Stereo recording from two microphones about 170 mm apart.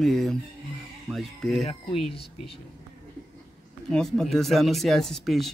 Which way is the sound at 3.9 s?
5° left (ahead or behind).